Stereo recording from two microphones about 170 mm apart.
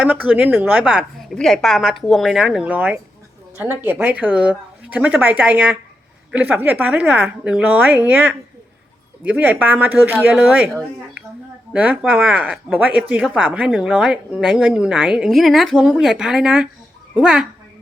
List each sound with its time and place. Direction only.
0.0 s speech: 10° right (ahead or behind)